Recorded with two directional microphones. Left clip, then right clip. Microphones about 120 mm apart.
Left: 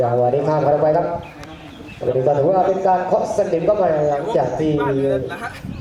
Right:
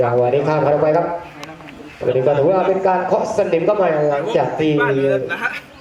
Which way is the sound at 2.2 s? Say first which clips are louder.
Even; 15° right (ahead or behind).